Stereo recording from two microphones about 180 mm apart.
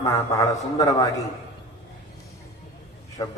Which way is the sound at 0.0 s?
15° left (ahead or behind).